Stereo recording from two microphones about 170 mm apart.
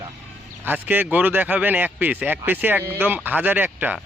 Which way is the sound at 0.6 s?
10° right (ahead or behind).